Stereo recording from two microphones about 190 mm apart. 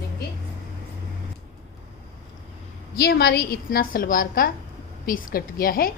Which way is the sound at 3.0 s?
55° left (ahead or behind).